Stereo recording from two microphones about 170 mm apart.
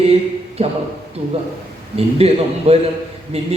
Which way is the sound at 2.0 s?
35° right (ahead or behind).